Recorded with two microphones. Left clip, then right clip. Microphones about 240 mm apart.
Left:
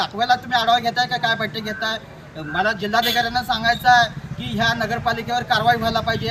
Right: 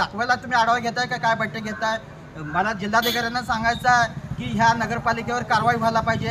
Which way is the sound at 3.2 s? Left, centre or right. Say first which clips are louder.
Left 3 dB; centre.